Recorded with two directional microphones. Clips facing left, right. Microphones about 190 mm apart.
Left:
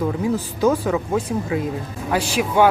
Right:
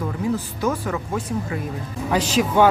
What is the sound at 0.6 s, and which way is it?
Speech, 20° left (ahead or behind).